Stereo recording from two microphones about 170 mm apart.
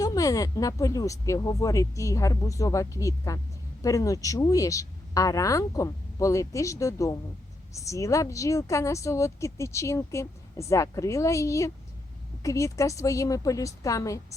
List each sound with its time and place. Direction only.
0.0 s speech: 20° left (ahead or behind)